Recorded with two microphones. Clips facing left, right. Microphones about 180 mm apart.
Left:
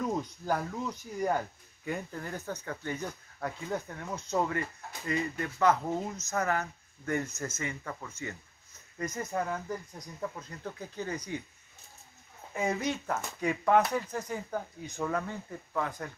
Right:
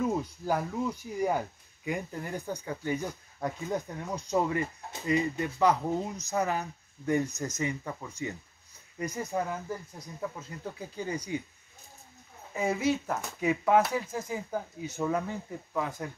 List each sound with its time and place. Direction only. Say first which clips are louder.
0.0 s speech: right 3 dB; 10° right (ahead or behind)
12.5 s speech: right 3 dB; 5° right (ahead or behind)